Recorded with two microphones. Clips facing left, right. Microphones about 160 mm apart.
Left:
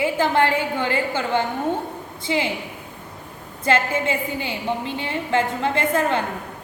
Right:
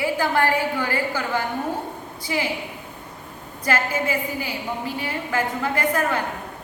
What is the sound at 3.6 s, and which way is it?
A woman's voice, 25° left (ahead or behind).